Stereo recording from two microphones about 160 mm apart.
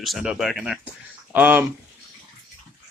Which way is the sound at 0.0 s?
Centre (ahead or behind).